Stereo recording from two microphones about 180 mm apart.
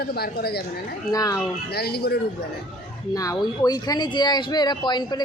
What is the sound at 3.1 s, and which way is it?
Speech, 20° left (ahead or behind).